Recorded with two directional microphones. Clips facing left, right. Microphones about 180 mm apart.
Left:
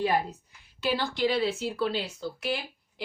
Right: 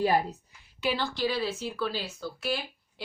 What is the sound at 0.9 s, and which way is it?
A woman's voice, 15° left (ahead or behind).